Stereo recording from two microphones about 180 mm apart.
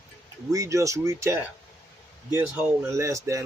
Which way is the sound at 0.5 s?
15° right (ahead or behind).